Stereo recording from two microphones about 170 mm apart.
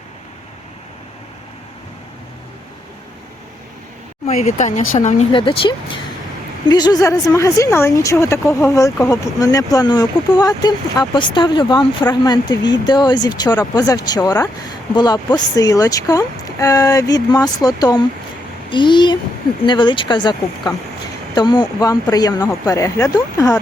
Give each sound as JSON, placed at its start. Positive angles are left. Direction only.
{"t": 4.3, "sound": "speech", "side_deg": 45}